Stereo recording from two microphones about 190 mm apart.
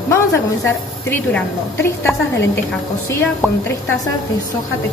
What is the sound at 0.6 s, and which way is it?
Speech, 10° left (ahead or behind).